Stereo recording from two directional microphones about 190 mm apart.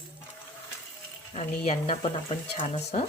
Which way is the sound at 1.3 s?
35° left (ahead or behind).